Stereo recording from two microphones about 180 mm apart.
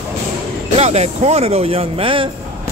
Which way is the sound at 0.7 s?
35° right (ahead or behind).